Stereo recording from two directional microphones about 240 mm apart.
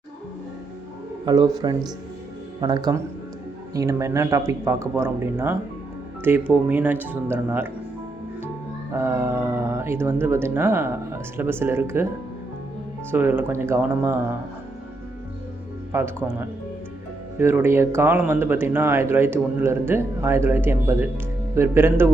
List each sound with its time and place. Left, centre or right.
1.2 s speech: centre
8.9 s speech: centre
13.1 s speech: centre
15.9 s speech: centre
17.3 s speech: centre